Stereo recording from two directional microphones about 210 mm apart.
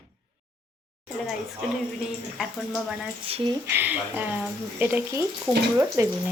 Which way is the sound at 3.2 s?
25° right (ahead or behind).